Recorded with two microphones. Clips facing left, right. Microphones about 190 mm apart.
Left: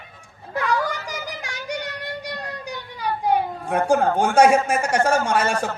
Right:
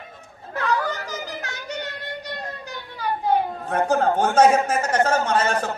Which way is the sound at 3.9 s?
10° left (ahead or behind).